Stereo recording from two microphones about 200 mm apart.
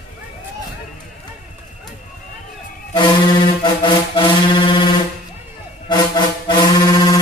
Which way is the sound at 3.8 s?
25° left (ahead or behind).